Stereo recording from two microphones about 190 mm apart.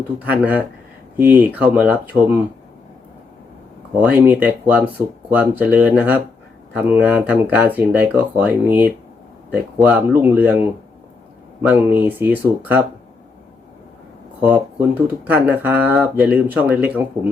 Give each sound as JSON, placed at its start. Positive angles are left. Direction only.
{"t": 0.2, "sound": "speech", "side_deg": -10}
{"t": 4.0, "sound": "speech", "side_deg": -10}
{"t": 11.7, "sound": "speech", "side_deg": -10}
{"t": 14.5, "sound": "speech", "side_deg": -10}